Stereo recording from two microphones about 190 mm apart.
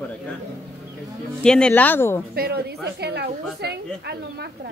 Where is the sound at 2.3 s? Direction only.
55° right (ahead or behind).